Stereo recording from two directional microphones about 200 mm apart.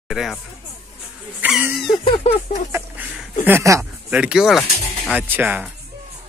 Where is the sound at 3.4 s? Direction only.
15° right (ahead or behind).